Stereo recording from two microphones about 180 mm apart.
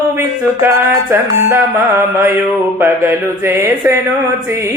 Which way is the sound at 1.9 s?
15° right (ahead or behind).